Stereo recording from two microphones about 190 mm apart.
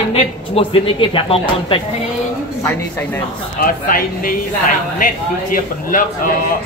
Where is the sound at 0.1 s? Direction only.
30° left (ahead or behind).